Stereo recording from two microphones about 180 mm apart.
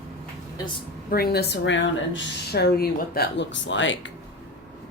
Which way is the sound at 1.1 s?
60° left (ahead or behind).